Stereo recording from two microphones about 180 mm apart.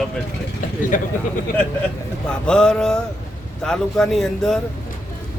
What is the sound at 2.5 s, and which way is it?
Speech, 5° left (ahead or behind).